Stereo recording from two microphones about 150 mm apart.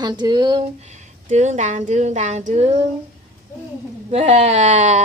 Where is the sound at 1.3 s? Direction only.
50° right (ahead or behind).